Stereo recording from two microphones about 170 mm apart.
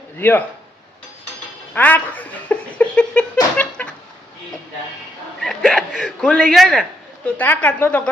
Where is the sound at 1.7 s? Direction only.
10° left (ahead or behind).